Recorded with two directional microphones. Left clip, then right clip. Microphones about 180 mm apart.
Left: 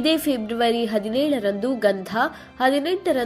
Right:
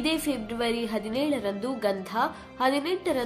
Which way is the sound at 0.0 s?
30° left (ahead or behind).